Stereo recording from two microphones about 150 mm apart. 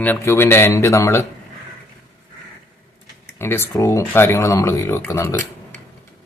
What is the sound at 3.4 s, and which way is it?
Speech, 15° left (ahead or behind).